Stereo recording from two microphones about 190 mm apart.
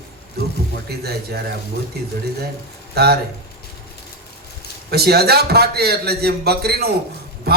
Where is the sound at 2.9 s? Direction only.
60° right (ahead or behind).